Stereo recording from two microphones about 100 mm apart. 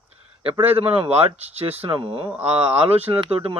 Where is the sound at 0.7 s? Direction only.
75° right (ahead or behind).